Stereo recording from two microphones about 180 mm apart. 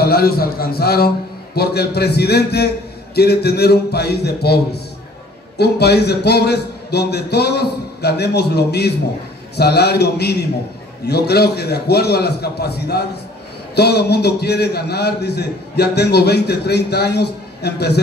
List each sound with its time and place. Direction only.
0.0 s a man's voice: 60° left (ahead or behind)